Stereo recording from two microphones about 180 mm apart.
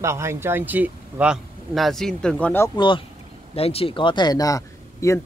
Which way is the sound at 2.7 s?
25° left (ahead or behind).